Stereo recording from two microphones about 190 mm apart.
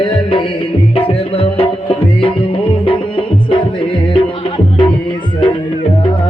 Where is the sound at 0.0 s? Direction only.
25° left (ahead or behind).